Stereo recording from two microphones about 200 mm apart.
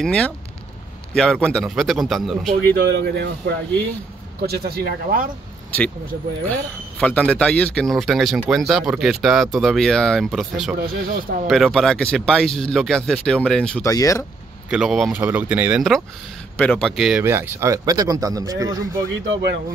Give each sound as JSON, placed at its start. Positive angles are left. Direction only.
{"t": 0.0, "sound": "speech", "side_deg": 5}
{"t": 2.9, "sound": "speech", "side_deg": -60}
{"t": 6.4, "sound": "speech", "side_deg": 10}
{"t": 10.8, "sound": "speech", "side_deg": -45}
{"t": 11.4, "sound": "speech", "side_deg": 0}
{"t": 13.8, "sound": "speech", "side_deg": 15}
{"t": 14.7, "sound": "speech", "side_deg": 0}
{"t": 17.2, "sound": "speech", "side_deg": -10}